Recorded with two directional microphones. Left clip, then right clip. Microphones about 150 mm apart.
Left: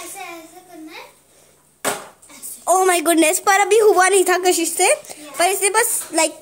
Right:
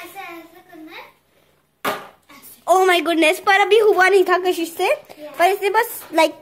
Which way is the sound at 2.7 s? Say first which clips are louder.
Right 1 dB; 10° left (ahead or behind).